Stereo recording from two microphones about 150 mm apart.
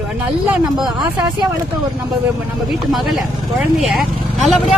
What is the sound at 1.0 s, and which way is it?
Speech, 25° right (ahead or behind).